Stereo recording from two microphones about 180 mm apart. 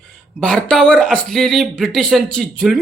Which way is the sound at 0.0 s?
5° left (ahead or behind).